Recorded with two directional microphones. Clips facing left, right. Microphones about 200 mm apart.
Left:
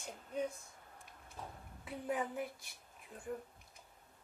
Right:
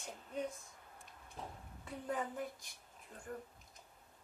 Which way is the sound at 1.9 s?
10° left (ahead or behind).